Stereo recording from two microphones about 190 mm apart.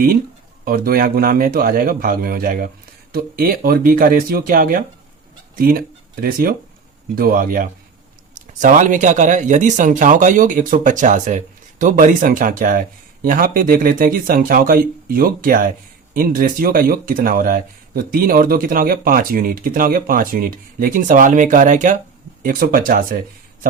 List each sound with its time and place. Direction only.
0.6 s speech: 50° right (ahead or behind)